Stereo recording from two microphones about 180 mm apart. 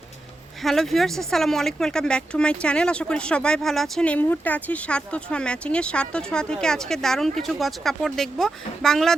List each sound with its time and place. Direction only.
0.6 s speech: centre (ahead or behind)